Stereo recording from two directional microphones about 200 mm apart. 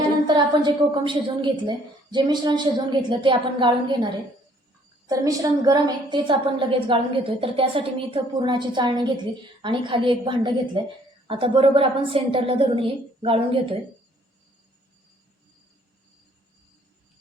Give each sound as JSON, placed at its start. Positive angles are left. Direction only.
{"t": 0.3, "sound": "a woman's voice", "side_deg": -20}